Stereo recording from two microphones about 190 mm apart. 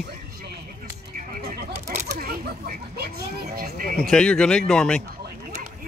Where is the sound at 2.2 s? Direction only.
50° right (ahead or behind).